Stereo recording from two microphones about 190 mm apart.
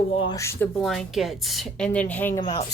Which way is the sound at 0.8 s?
Centre (ahead or behind).